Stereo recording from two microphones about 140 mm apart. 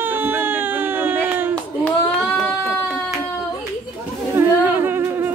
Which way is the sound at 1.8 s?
5° left (ahead or behind).